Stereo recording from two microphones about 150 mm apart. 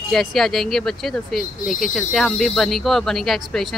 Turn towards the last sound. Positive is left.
turn(degrees=0)  # may be behind; listen again after turning